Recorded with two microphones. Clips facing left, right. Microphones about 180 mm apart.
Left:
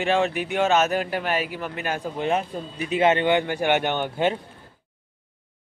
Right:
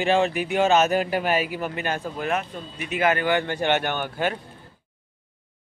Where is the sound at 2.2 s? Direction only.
30° left (ahead or behind).